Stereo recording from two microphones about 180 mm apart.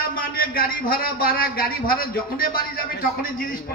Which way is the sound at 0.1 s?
55° left (ahead or behind).